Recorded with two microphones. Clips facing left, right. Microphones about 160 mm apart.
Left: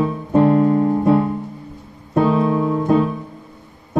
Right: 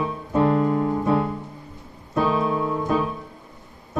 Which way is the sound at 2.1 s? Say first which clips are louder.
Left 6 dB; 25° left (ahead or behind).